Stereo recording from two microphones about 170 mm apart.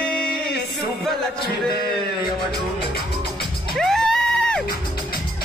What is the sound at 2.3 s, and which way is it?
Music, centre (ahead or behind).